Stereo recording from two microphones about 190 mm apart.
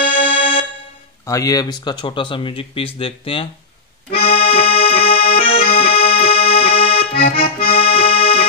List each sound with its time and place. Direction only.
0.2 s music: 30° left (ahead or behind)
1.2 s speech: 15° left (ahead or behind)
4.1 s accordion: 30° left (ahead or behind)
5.1 s accordion: 50° left (ahead or behind)
5.4 s accordion: 30° left (ahead or behind)
7.2 s accordion: 50° left (ahead or behind)
7.7 s accordion: 30° left (ahead or behind)